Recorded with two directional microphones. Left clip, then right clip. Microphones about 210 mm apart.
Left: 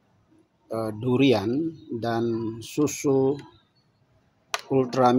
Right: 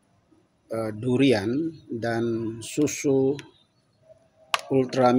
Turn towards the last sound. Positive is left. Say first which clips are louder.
# even
turn(degrees=0)  # may be behind; listen again after turning